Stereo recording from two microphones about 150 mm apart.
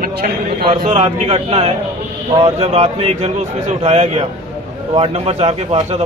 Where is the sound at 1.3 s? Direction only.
40° right (ahead or behind).